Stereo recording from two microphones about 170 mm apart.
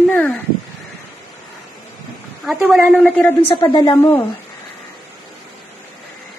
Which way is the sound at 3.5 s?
30° left (ahead or behind).